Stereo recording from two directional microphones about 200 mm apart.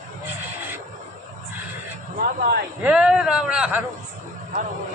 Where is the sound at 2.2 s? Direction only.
50° right (ahead or behind).